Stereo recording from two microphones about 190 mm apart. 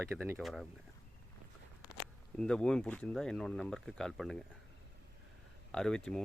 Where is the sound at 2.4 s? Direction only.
5° left (ahead or behind).